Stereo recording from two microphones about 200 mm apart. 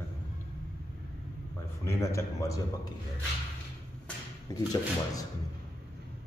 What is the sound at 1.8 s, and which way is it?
Speech, 15° left (ahead or behind).